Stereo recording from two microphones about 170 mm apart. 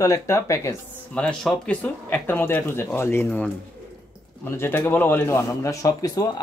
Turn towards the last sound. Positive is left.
turn(degrees=20)  # may be behind; listen again after turning